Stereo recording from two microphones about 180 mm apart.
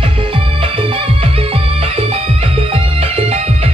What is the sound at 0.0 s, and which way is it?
Music, 30° right (ahead or behind).